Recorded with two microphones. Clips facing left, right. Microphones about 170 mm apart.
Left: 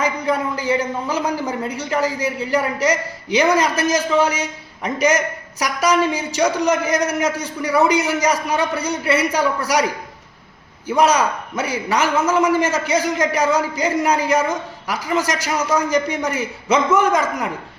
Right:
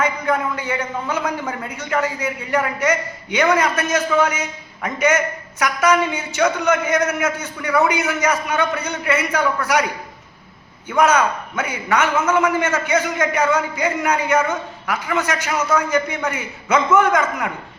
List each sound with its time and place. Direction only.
0.5 s a man's voice: 35° left (ahead or behind)
10.8 s a man's voice: 35° left (ahead or behind)